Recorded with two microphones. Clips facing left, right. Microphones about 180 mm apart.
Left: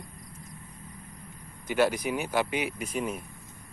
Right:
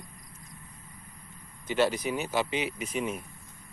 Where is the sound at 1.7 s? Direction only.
10° left (ahead or behind).